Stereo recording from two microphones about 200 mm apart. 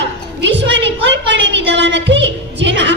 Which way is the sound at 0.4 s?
65° right (ahead or behind).